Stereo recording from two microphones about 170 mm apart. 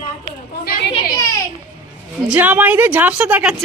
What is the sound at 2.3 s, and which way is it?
A woman's voice, 10° right (ahead or behind).